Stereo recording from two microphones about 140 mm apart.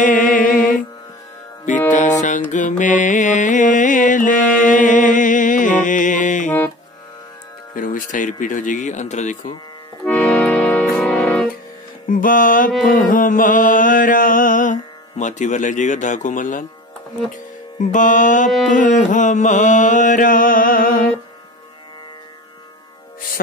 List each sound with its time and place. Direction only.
0.0 s music: 70° left (ahead or behind)
1.9 s music: 60° left (ahead or behind)
7.7 s mantra: 70° left (ahead or behind)
10.0 s accordion: 10° left (ahead or behind)
11.0 s music: 5° left (ahead or behind)
12.1 s mantra: 75° left (ahead or behind)
17.3 s music: 65° left (ahead or behind)
18.7 s mantra: 65° left (ahead or behind); by 21.1 s 90° left